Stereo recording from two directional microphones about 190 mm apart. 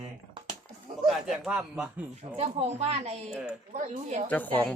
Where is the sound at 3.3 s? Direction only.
5° right (ahead or behind).